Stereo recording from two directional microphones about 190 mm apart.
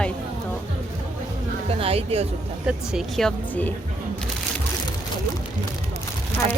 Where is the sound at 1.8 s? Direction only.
30° right (ahead or behind).